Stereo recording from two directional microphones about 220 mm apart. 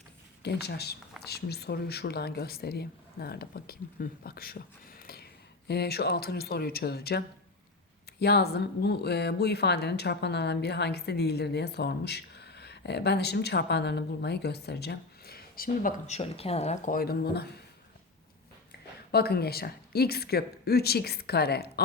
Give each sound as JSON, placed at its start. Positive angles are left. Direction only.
{"t": 0.4, "sound": "speech", "side_deg": 50}
{"t": 19.1, "sound": "speech", "side_deg": 45}